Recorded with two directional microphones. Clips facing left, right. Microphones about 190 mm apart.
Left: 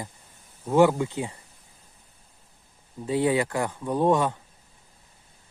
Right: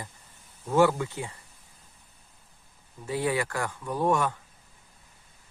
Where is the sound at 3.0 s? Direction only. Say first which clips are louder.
Left 5 dB; 20° left (ahead or behind).